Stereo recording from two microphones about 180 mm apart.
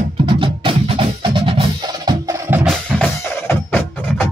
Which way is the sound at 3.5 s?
10° left (ahead or behind).